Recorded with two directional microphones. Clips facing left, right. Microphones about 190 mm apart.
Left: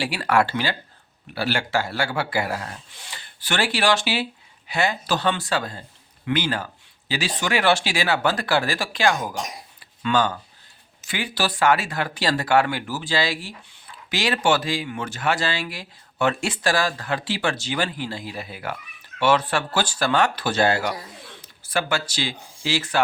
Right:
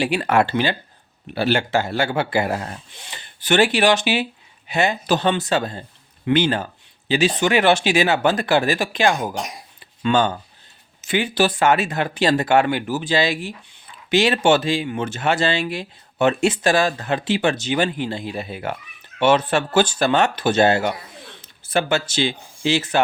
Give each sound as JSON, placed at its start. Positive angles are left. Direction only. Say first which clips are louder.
{"t": 0.0, "sound": "speech", "louder": "right 3 dB", "side_deg": -20}